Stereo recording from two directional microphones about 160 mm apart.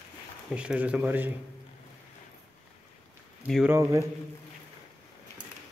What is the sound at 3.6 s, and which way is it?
Speech, 15° right (ahead or behind).